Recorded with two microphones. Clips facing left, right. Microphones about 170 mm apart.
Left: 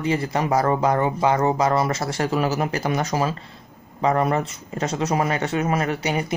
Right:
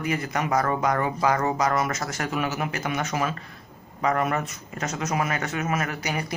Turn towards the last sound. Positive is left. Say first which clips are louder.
# left 5 dB
turn(degrees=25)  # may be behind; listen again after turning